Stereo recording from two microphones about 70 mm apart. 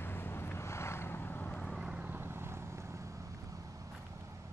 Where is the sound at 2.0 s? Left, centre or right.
Right.